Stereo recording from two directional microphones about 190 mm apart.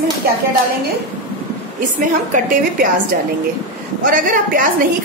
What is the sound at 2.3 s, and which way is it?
A woman's voice, 45° right (ahead or behind).